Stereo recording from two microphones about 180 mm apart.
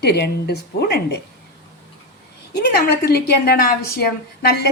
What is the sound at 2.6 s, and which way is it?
A woman's voice, 65° left (ahead or behind).